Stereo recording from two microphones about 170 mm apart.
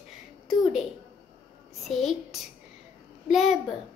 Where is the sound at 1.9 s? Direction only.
Centre (ahead or behind).